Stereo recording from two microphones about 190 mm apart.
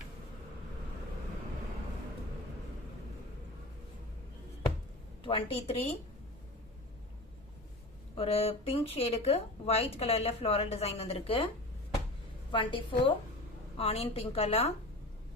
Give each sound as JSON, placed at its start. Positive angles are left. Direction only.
{"t": 5.2, "sound": "speech", "side_deg": 30}
{"t": 8.1, "sound": "speech", "side_deg": 30}
{"t": 12.5, "sound": "a woman's voice", "side_deg": 25}